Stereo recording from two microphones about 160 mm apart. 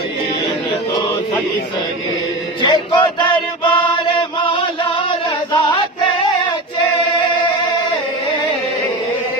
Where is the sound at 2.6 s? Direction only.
30° left (ahead or behind).